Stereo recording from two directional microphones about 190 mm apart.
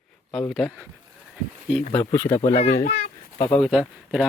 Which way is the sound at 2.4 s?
35° left (ahead or behind).